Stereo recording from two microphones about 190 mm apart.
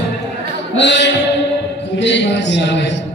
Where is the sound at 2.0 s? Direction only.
70° left (ahead or behind).